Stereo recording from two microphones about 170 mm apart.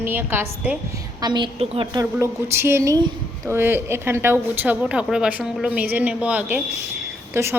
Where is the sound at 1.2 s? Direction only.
25° right (ahead or behind).